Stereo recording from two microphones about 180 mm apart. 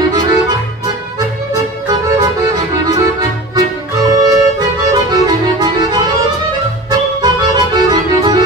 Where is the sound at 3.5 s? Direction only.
20° right (ahead or behind).